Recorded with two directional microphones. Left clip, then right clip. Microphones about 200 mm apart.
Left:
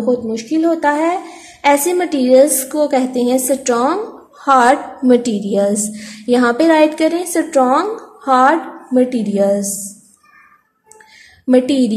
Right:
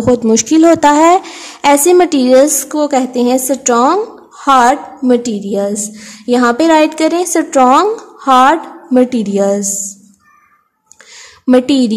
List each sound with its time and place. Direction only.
0.0 s speech: 30° right (ahead or behind)
11.4 s speech: 20° right (ahead or behind)